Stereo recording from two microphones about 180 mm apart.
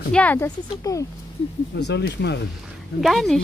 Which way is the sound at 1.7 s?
70° left (ahead or behind).